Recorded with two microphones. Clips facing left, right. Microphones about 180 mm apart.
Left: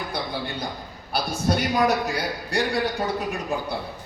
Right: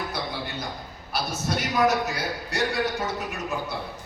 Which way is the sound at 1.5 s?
30° left (ahead or behind).